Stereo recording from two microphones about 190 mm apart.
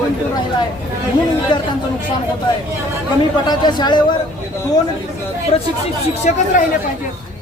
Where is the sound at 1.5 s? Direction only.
25° left (ahead or behind).